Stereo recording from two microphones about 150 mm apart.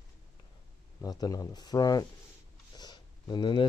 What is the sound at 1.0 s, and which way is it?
Speech, 25° left (ahead or behind).